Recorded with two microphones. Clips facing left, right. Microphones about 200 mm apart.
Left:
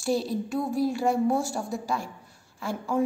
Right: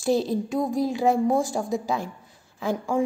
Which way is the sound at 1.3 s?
15° right (ahead or behind).